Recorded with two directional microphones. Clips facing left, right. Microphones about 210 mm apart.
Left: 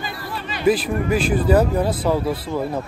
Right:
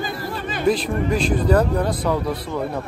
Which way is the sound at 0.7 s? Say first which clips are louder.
Left 2 dB; 5° left (ahead or behind).